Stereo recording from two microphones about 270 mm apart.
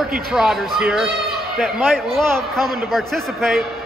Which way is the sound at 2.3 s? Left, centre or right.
Centre.